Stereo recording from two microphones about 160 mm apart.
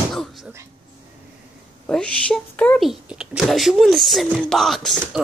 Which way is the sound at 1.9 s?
5° left (ahead or behind).